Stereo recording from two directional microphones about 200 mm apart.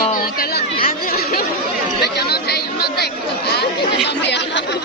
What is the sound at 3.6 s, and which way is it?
Speech, 60° left (ahead or behind).